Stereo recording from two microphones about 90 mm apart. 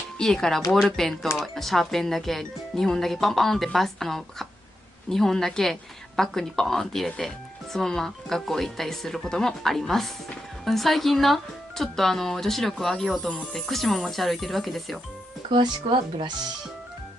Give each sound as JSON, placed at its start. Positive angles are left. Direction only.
{"t": 0.2, "sound": "a woman's voice", "side_deg": 5}
{"t": 15.5, "sound": "speech", "side_deg": -65}